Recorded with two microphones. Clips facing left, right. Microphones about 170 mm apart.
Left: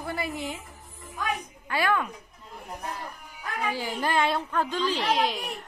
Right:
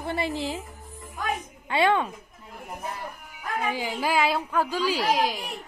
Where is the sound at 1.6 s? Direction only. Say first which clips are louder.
Right 4 dB; 25° right (ahead or behind).